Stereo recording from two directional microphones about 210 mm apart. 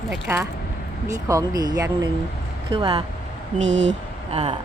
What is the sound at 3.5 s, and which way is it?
Speech, 35° right (ahead or behind).